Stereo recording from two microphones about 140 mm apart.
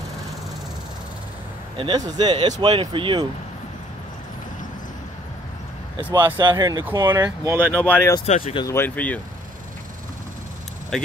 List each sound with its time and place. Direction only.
1.8 s speech: 30° right (ahead or behind)
6.1 s speech: 35° right (ahead or behind)
7.7 s speech: 10° left (ahead or behind)
8.3 s speech: 55° left (ahead or behind)
8.6 s speech: 15° left (ahead or behind)
10.9 s speech: 5° left (ahead or behind)